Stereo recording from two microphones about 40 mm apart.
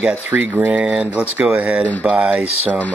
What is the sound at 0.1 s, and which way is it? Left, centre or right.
Speech, right.